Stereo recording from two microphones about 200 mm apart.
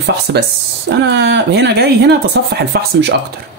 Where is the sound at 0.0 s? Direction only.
55° right (ahead or behind).